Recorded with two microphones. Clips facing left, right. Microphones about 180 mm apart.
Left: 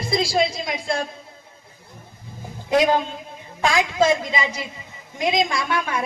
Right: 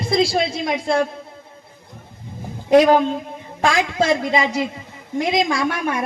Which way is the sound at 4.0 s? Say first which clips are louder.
Right 1 dB; 70° right (ahead or behind).